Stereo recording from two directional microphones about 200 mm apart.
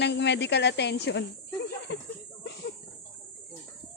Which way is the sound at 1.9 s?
60° left (ahead or behind).